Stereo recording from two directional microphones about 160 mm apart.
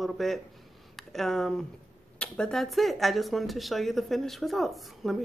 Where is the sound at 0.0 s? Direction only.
Centre (ahead or behind).